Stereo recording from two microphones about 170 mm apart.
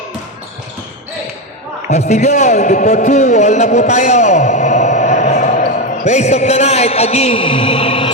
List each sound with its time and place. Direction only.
1.9 s a man's voice: 40° left (ahead or behind)